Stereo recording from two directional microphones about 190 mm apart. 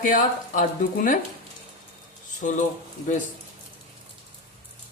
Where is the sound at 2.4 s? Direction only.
40° left (ahead or behind).